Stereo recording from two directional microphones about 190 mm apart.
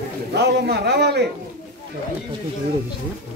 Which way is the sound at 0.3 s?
60° right (ahead or behind).